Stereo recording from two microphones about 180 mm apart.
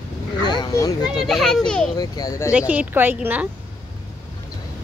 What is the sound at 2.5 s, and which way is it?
Speech, 10° right (ahead or behind).